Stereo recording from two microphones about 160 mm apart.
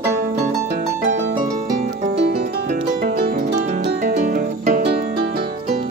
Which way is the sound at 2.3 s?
65° right (ahead or behind).